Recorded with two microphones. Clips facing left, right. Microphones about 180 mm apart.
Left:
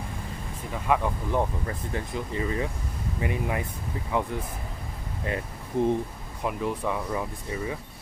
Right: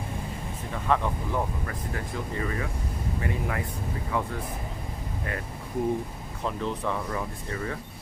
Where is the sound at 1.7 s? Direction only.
20° left (ahead or behind).